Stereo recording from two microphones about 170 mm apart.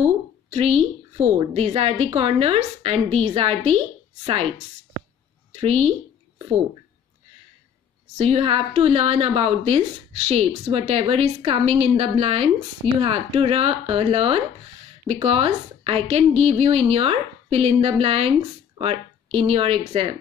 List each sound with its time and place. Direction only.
0.5 s a woman's voice: 40° right (ahead or behind)
5.6 s a sound: 35° right (ahead or behind)
8.2 s a woman's voice: 35° right (ahead or behind)